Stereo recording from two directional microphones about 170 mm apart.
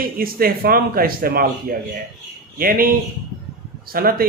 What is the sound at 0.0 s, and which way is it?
Speech, 60° right (ahead or behind).